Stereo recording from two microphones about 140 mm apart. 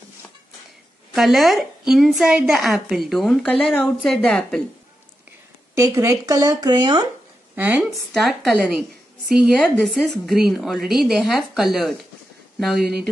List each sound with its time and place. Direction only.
1.1 s a woman's voice: centre (ahead or behind)
5.8 s speech: 20° right (ahead or behind)
7.5 s a woman's voice: 10° right (ahead or behind)
8.1 s a woman's voice: centre (ahead or behind)